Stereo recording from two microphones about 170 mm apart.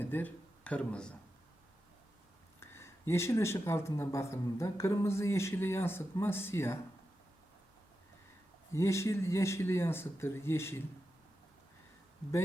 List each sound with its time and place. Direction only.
0.0 s speech: 10° left (ahead or behind)
2.6 s speech: 15° left (ahead or behind)
8.7 s speech: 15° left (ahead or behind)